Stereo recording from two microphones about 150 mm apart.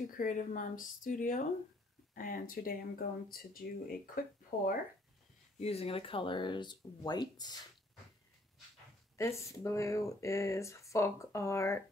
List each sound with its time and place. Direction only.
0.2 s speech: 65° left (ahead or behind)
5.6 s speech: 40° left (ahead or behind); by 7.6 s 25° left (ahead or behind)
9.1 s speech: 20° left (ahead or behind)